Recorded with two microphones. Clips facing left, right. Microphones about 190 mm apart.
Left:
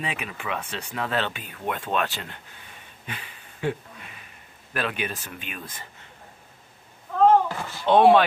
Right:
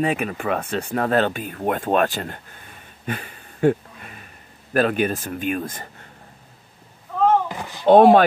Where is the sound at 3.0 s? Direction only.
50° right (ahead or behind).